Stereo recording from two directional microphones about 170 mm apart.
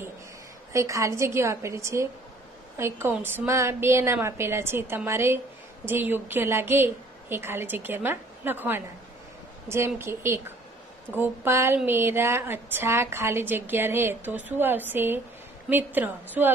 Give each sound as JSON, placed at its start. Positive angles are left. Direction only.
{"t": 0.7, "sound": "a woman's voice", "side_deg": -20}